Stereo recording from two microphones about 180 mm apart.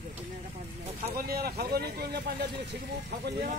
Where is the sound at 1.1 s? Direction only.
55° right (ahead or behind).